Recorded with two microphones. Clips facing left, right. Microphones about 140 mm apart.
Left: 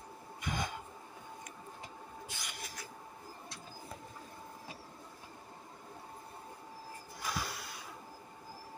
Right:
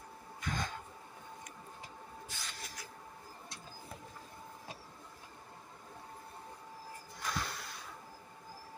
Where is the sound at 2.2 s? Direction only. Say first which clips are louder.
Left 1 dB; 15° left (ahead or behind).